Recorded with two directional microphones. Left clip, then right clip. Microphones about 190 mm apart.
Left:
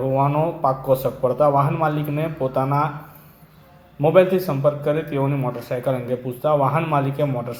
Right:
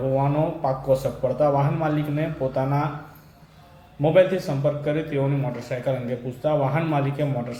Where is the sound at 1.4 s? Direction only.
15° left (ahead or behind).